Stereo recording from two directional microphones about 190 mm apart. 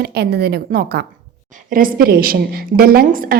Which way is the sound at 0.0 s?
60° right (ahead or behind).